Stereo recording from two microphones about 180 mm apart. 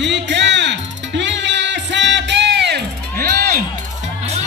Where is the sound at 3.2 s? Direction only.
55° right (ahead or behind).